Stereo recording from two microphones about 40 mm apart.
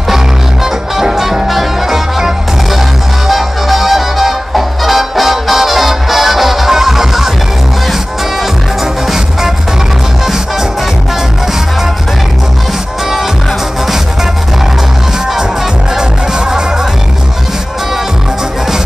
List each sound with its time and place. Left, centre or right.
0.7 s music: centre
9.0 s music: centre
16.0 s music: centre